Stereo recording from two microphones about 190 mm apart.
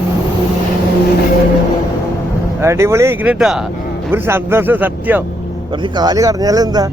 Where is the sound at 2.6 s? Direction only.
15° right (ahead or behind).